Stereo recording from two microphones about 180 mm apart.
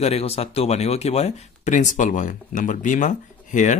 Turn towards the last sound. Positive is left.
turn(degrees=45)  # may be behind; listen again after turning